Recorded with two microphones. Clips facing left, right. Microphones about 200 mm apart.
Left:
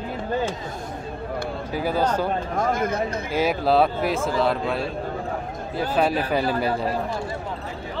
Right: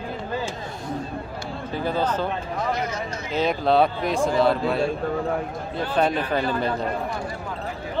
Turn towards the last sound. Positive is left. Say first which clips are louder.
# left 1 dB
turn(degrees=10)  # may be behind; listen again after turning